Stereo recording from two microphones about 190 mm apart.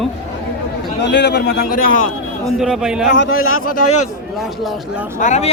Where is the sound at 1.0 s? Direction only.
65° left (ahead or behind).